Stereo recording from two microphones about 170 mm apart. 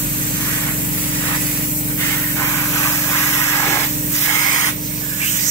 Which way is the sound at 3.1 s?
15° left (ahead or behind).